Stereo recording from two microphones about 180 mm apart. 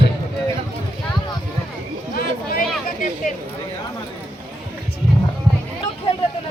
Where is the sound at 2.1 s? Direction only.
55° left (ahead or behind).